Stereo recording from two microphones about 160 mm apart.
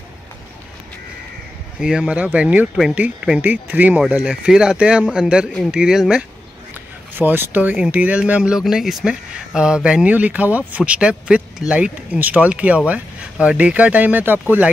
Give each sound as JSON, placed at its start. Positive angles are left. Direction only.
{"t": 1.8, "sound": "speech", "side_deg": -5}